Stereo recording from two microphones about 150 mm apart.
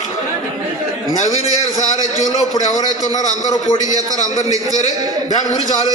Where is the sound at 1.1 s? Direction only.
55° left (ahead or behind).